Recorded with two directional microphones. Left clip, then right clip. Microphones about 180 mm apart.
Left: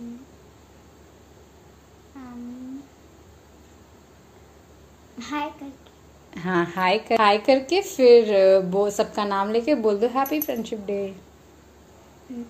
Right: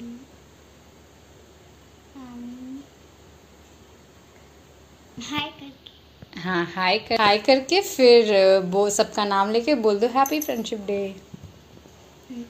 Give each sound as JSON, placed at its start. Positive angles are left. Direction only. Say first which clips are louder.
{"t": 5.2, "sound": "a woman's voice", "louder": "even", "side_deg": 10}